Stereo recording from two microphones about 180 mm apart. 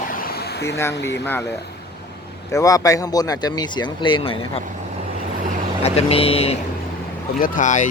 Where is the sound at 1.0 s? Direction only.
70° left (ahead or behind).